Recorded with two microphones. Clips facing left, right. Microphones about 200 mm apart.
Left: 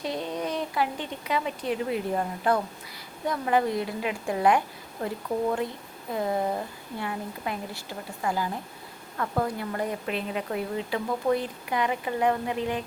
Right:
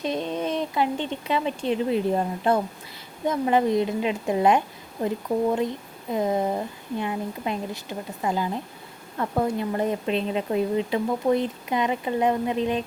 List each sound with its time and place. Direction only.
0.0 s speech: 20° right (ahead or behind)